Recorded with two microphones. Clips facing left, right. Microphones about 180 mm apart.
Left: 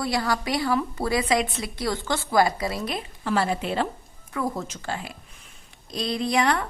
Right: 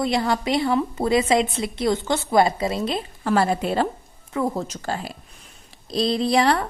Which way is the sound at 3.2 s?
45° right (ahead or behind).